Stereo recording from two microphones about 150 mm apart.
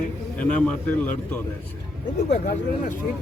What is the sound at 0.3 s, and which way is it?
Speech, 10° left (ahead or behind).